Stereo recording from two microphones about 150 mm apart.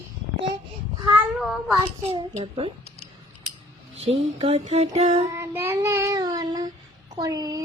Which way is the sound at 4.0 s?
40° right (ahead or behind).